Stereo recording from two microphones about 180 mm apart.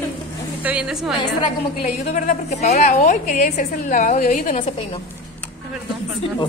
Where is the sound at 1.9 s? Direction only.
40° left (ahead or behind).